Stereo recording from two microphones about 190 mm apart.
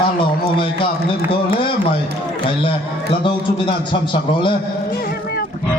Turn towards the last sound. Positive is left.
turn(degrees=25)  # may be behind; listen again after turning